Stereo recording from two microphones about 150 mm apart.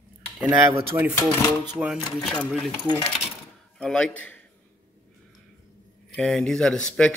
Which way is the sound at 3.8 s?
5° left (ahead or behind).